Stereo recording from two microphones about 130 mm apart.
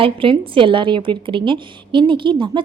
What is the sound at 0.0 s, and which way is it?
A woman's voice, 40° right (ahead or behind).